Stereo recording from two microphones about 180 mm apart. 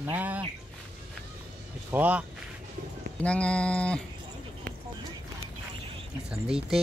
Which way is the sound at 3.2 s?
5° left (ahead or behind).